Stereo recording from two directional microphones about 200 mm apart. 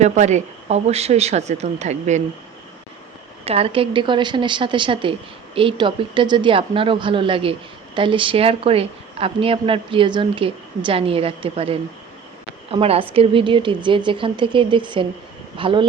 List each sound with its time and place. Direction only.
0.0 s speech: 35° right (ahead or behind)
3.4 s speech: 30° right (ahead or behind)